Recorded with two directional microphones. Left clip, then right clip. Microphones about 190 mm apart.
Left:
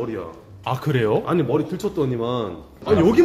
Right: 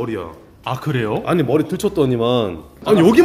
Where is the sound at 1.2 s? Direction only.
35° right (ahead or behind).